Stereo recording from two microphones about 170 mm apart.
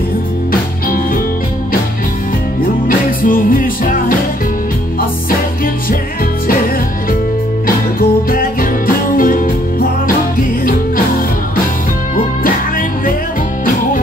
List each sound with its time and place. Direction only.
0.5 s music: 55° left (ahead or behind)
2.6 s music: 55° left (ahead or behind)
7.6 s music: 55° left (ahead or behind)
12.4 s music: 55° left (ahead or behind)